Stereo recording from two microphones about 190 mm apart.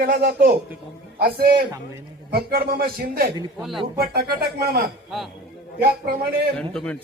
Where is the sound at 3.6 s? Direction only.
Centre (ahead or behind).